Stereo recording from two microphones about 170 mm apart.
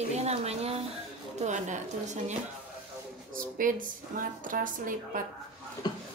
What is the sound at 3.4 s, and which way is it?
A woman's voice, 50° right (ahead or behind).